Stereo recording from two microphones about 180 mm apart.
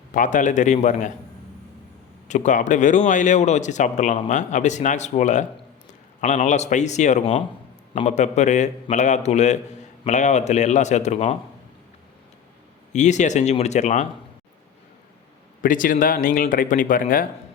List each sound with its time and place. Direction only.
0.1 s speech: 45° left (ahead or behind)
2.2 s speech: 40° left (ahead or behind)
12.9 s speech: 40° left (ahead or behind)
15.6 s speech: 50° left (ahead or behind)